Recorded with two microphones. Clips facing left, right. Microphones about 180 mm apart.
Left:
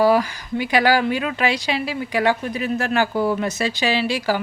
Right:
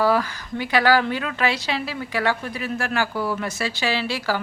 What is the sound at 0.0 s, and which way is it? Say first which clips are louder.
Speech: left 4 dB; 15° left (ahead or behind).